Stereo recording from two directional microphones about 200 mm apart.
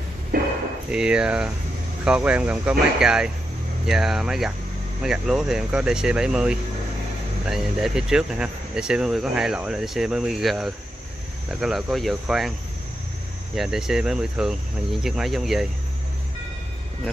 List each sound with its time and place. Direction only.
0.3 s a sound: 45° right (ahead or behind)
0.9 s speech: 5° right (ahead or behind)
13.6 s speech: centre (ahead or behind)